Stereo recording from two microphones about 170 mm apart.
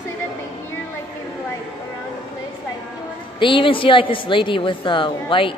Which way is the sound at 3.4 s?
30° left (ahead or behind).